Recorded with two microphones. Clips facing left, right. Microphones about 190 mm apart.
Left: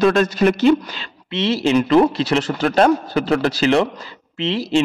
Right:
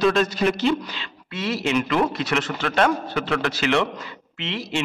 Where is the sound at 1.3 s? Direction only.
25° left (ahead or behind).